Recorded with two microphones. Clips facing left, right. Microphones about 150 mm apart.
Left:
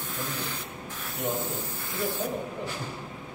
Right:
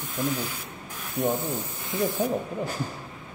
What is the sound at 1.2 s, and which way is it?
Speech, 50° right (ahead or behind).